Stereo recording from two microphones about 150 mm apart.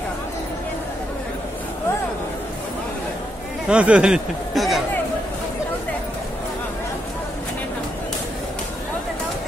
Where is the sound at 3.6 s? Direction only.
5° right (ahead or behind).